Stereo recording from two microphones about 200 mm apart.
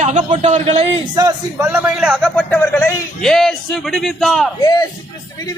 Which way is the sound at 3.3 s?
Centre (ahead or behind).